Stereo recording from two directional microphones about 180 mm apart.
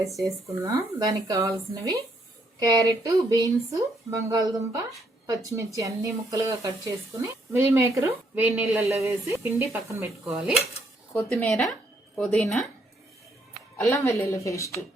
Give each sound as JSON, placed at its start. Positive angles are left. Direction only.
{"t": 0.2, "sound": "speech", "side_deg": -20}
{"t": 10.2, "sound": "speech", "side_deg": 0}
{"t": 11.1, "sound": "speech", "side_deg": 10}
{"t": 13.7, "sound": "speech", "side_deg": 15}